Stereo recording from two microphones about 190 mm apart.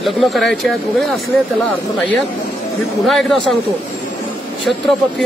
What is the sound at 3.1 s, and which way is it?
Speech, centre (ahead or behind).